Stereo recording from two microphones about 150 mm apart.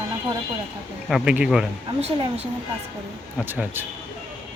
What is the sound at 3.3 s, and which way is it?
Speech, 10° right (ahead or behind).